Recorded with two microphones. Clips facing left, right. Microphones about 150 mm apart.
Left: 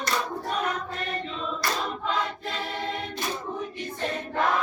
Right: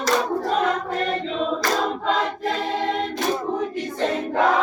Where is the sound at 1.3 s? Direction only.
90° right.